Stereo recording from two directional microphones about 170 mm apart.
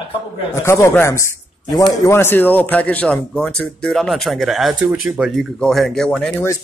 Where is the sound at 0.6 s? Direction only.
15° left (ahead or behind).